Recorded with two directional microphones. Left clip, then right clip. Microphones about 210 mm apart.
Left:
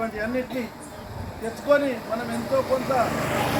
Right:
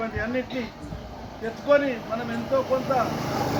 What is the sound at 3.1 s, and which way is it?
Speech, 45° right (ahead or behind).